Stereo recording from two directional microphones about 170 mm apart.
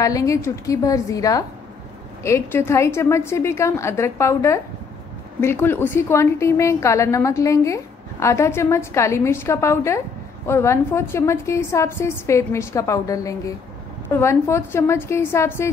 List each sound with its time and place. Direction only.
0.0 s a woman's voice: 20° left (ahead or behind)